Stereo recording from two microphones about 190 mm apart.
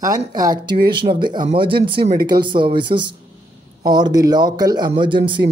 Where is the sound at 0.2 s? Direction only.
20° right (ahead or behind).